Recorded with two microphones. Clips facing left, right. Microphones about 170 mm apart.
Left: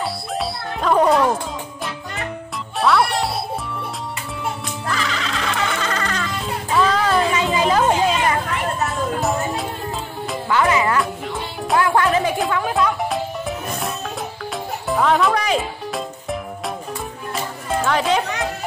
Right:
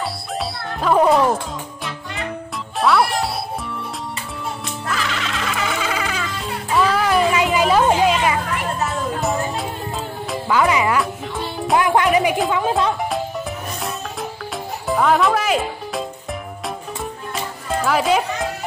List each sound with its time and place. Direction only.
0.0 s music: centre (ahead or behind)
2.8 s music: centre (ahead or behind)
4.8 s music: centre (ahead or behind)
10.5 s music: 15° right (ahead or behind)
11.0 s music: centre (ahead or behind)
11.7 s music: 20° right (ahead or behind)
14.9 s music: centre (ahead or behind)
17.8 s music: 5° right (ahead or behind)